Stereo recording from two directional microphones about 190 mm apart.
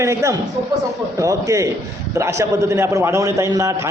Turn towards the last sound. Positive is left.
turn(degrees=-15)  # may be behind; listen again after turning